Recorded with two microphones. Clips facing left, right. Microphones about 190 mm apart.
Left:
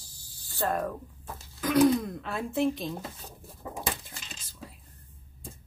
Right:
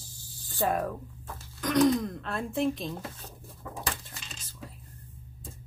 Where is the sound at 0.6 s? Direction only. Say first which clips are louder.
Right 1 dB; 10° right (ahead or behind).